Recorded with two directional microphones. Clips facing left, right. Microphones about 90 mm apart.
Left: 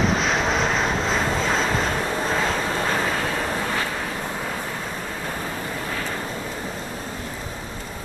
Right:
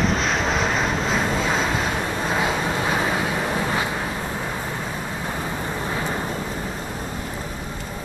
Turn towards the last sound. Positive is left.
turn(degrees=-20)  # may be behind; listen again after turning